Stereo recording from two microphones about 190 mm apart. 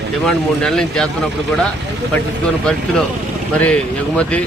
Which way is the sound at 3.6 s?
5° left (ahead or behind).